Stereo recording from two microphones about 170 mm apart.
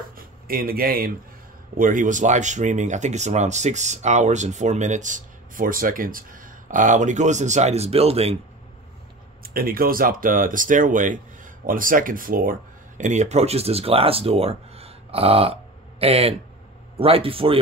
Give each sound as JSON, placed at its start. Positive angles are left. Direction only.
{"t": 0.2, "sound": "speech", "side_deg": -60}
{"t": 9.4, "sound": "speech", "side_deg": -60}